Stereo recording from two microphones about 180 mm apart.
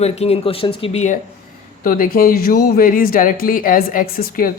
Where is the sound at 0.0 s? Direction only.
35° left (ahead or behind).